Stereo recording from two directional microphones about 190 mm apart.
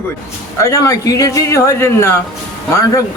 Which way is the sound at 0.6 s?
15° left (ahead or behind).